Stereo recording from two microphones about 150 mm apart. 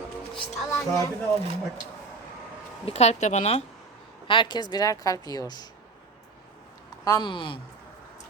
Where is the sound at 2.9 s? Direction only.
45° left (ahead or behind).